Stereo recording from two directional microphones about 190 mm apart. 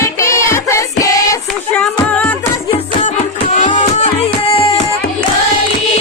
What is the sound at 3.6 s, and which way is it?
Music, 40° left (ahead or behind).